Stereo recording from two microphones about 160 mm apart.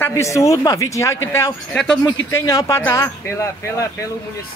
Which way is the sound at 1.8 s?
5° left (ahead or behind).